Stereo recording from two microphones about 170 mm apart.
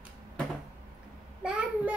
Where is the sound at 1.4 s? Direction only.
10° right (ahead or behind).